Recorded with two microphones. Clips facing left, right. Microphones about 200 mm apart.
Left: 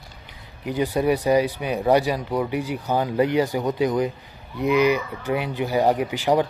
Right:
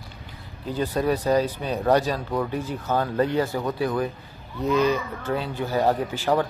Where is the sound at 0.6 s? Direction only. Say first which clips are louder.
Left 3 dB; 15° left (ahead or behind).